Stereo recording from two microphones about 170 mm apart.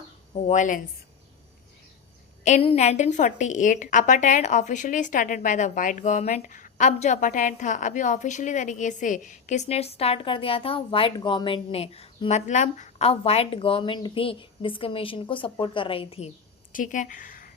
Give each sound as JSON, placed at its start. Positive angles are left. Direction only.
{"t": 0.4, "sound": "a woman's voice", "side_deg": 45}
{"t": 2.4, "sound": "a woman's voice", "side_deg": 45}
{"t": 16.7, "sound": "speech", "side_deg": 50}